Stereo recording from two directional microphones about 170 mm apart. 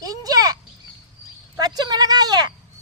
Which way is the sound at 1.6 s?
25° right (ahead or behind).